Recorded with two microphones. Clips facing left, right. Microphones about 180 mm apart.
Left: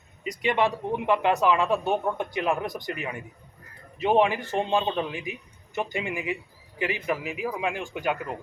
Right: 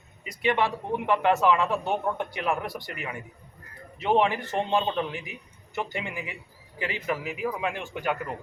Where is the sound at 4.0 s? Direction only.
15° left (ahead or behind).